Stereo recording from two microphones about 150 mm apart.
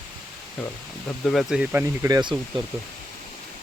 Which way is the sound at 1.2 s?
Centre (ahead or behind).